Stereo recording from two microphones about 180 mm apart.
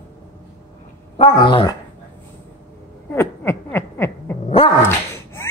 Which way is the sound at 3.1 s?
10° left (ahead or behind).